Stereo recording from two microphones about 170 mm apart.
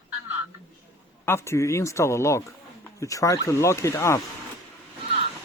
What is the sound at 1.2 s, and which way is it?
Speech, 15° left (ahead or behind).